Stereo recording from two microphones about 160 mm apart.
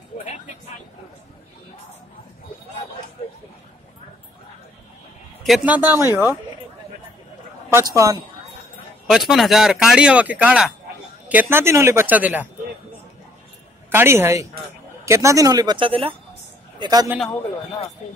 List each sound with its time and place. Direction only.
5.7 s speech: 10° right (ahead or behind)
7.7 s speech: 20° right (ahead or behind)
9.1 s speech: centre (ahead or behind)
13.8 s speech: 15° right (ahead or behind); by 16.2 s 35° right (ahead or behind)
16.8 s speech: 25° right (ahead or behind)